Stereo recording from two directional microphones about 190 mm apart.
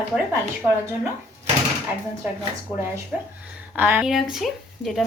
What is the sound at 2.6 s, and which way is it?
Speech, 10° right (ahead or behind).